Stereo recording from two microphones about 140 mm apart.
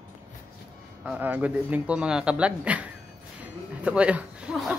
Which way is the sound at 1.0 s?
10° right (ahead or behind).